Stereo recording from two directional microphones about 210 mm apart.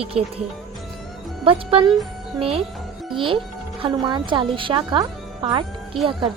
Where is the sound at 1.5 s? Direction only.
25° right (ahead or behind).